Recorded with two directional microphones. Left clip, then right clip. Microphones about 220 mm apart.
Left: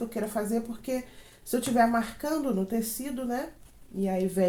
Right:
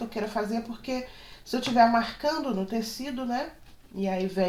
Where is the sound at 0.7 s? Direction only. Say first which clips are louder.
Even; 45° left (ahead or behind).